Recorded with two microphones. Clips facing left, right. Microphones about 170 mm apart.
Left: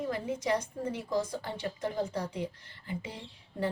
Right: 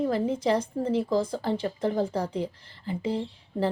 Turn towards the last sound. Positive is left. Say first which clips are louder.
# right 7 dB
turn(degrees=-30)  # may be behind; listen again after turning